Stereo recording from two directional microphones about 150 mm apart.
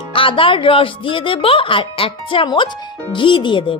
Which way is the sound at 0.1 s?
35° left (ahead or behind).